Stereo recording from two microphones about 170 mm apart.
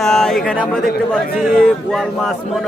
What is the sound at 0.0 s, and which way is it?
A man's voice, 5° left (ahead or behind).